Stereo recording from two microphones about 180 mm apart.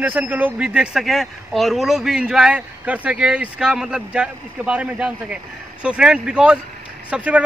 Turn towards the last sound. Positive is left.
turn(degrees=-5)  # may be behind; listen again after turning